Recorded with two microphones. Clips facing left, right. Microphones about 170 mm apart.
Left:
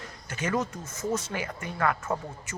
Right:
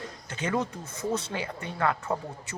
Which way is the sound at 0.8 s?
60° right (ahead or behind).